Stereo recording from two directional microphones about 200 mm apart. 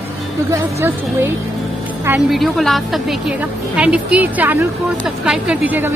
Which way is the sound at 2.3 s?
Centre (ahead or behind).